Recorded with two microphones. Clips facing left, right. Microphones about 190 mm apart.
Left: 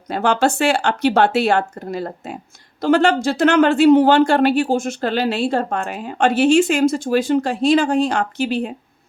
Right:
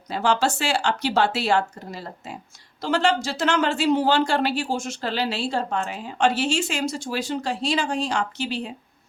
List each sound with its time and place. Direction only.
0.1 s speech: 60° left (ahead or behind)